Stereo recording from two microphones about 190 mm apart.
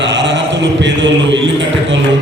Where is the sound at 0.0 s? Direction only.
70° right (ahead or behind).